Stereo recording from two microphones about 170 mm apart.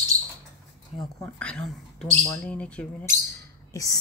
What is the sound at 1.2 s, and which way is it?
Speech, 5° left (ahead or behind).